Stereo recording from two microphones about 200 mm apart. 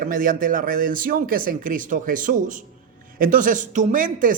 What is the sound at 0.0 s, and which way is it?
Speech, 45° right (ahead or behind).